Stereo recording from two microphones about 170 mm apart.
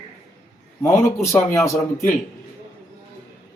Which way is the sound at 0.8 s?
15° left (ahead or behind).